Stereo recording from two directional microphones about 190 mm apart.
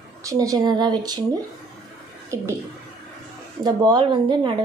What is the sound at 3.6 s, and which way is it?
Speech, 20° right (ahead or behind).